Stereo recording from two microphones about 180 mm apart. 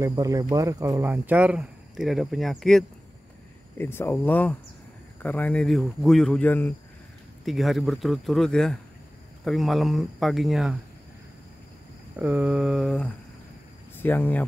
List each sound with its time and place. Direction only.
0.0 s speech: 20° right (ahead or behind); by 2.8 s centre (ahead or behind)
3.7 s speech: 10° left (ahead or behind)
12.2 s speech: 10° right (ahead or behind); by 14.4 s 10° left (ahead or behind)